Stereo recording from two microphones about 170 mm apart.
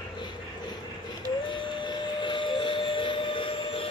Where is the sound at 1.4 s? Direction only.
30° left (ahead or behind).